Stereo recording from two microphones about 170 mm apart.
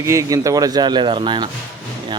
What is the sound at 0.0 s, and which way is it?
Speech, 20° right (ahead or behind).